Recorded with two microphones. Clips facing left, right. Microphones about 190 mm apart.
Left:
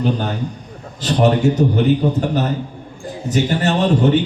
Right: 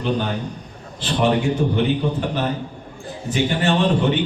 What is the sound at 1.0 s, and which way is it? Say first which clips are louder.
A man's voice: left 4 dB; 40° left (ahead or behind).